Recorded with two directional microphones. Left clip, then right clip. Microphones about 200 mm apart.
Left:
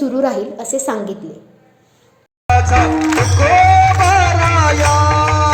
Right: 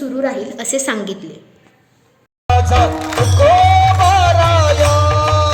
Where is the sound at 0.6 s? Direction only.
35° right (ahead or behind).